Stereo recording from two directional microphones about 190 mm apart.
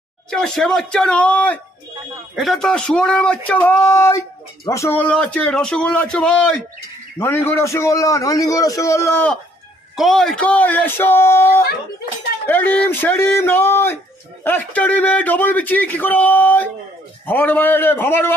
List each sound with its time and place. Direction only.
0.3 s a man's voice: 5° left (ahead or behind)